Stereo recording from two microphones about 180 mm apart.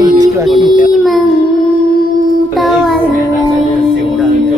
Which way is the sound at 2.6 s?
Centre (ahead or behind).